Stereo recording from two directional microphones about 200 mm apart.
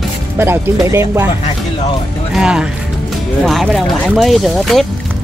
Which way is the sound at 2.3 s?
5° right (ahead or behind).